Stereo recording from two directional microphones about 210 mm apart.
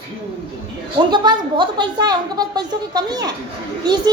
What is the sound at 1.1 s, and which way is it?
A woman's voice, 20° right (ahead or behind).